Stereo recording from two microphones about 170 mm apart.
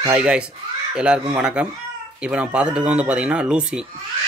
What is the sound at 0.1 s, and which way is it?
Speech, 5° right (ahead or behind).